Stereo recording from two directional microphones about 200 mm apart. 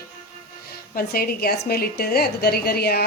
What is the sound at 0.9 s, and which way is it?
A woman's voice, 50° left (ahead or behind).